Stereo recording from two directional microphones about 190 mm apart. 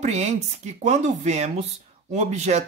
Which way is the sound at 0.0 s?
35° right (ahead or behind).